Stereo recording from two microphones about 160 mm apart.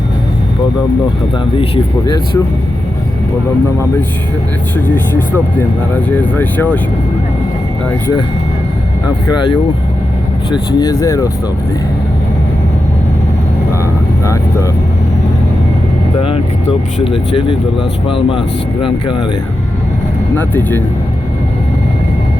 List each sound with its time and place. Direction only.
1.5 s speech: 30° left (ahead or behind)
4.9 s speech: 10° left (ahead or behind)
9.2 s speech: 25° left (ahead or behind)
17.0 s speech: 35° left (ahead or behind)
20.3 s speech: 10° left (ahead or behind)